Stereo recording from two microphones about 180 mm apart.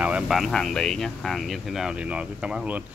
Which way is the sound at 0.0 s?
5° right (ahead or behind).